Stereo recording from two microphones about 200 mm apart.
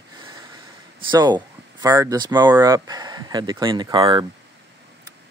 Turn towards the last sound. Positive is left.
turn(degrees=-25)  # may be behind; listen again after turning